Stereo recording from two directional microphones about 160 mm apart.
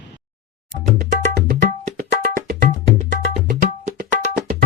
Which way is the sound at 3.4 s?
65° right (ahead or behind).